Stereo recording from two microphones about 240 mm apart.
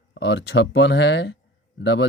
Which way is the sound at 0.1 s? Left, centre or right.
Left.